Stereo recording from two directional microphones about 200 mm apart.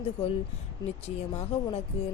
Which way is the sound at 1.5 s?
30° left (ahead or behind).